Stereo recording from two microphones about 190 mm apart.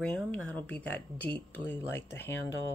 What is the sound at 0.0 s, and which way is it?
Speech, 5° left (ahead or behind).